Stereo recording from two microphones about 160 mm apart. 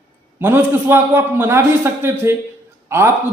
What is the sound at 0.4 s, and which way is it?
Speech, 10° right (ahead or behind).